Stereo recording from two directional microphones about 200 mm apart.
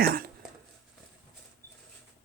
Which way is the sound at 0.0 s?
45° right (ahead or behind).